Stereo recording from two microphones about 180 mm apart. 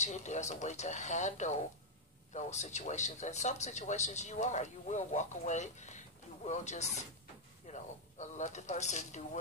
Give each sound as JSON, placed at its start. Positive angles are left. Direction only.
{"t": 0.0, "sound": "speech", "side_deg": 40}